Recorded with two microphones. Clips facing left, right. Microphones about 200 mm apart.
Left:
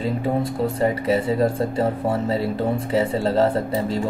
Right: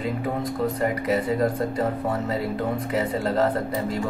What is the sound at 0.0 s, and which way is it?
Speech, 30° left (ahead or behind).